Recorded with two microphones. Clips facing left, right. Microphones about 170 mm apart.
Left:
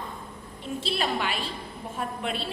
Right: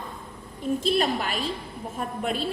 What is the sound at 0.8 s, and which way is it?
A woman's voice, 40° right (ahead or behind).